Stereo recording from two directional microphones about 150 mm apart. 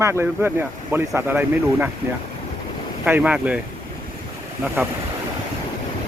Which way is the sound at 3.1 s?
10° right (ahead or behind).